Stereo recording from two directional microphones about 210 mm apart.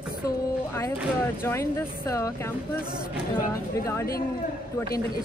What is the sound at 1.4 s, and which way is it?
Speech, 15° left (ahead or behind).